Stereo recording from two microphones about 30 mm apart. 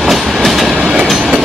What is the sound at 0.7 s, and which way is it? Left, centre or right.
Train, right.